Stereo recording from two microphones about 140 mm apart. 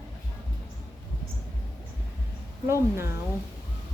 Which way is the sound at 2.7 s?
20° right (ahead or behind).